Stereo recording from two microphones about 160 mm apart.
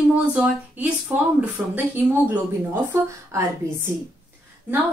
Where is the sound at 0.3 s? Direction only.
5° right (ahead or behind).